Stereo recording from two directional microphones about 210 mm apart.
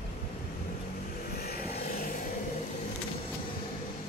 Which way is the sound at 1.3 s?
45° left (ahead or behind).